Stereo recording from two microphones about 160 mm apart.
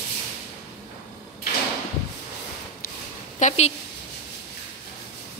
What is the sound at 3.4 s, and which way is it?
Speech, 45° left (ahead or behind).